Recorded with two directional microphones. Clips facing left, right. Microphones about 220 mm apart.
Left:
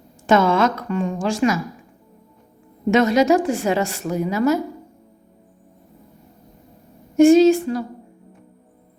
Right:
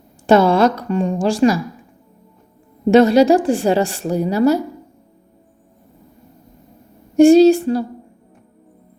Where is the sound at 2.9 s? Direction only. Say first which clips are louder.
Right 5 dB; 30° right (ahead or behind).